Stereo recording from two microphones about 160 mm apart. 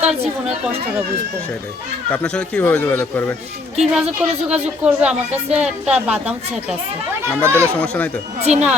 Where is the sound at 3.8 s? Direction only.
5° right (ahead or behind).